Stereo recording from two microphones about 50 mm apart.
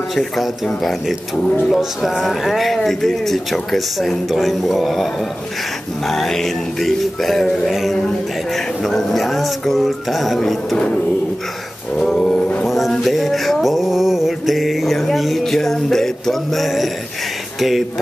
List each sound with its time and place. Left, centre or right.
0.1 s speech: centre
6.0 s music: centre
7.7 s speech: centre
12.0 s music: centre
12.6 s a sound: centre
17.6 s speech: centre